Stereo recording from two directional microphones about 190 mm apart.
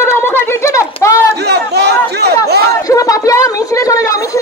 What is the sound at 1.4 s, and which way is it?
Chatter, 60° right (ahead or behind).